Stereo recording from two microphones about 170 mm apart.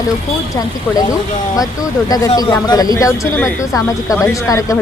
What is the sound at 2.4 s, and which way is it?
Speech, 25° left (ahead or behind).